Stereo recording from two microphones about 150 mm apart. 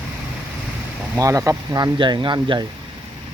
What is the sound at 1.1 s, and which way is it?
Speech, 20° right (ahead or behind).